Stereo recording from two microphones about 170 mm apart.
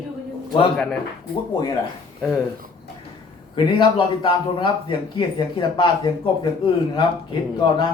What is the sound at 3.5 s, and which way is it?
A man's voice, 30° left (ahead or behind).